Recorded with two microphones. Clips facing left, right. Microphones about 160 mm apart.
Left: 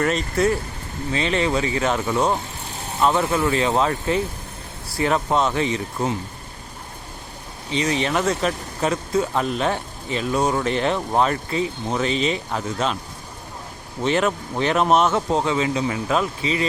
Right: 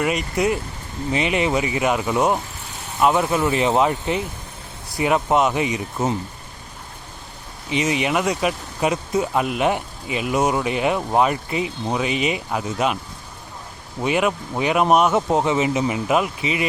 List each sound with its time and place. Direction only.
0.0 s speech: 15° right (ahead or behind)
3.4 s speech: 20° right (ahead or behind)
7.7 s speech: 15° right (ahead or behind)
14.0 s speech: 10° right (ahead or behind)